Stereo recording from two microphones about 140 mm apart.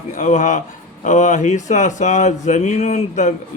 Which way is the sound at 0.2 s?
60° left (ahead or behind).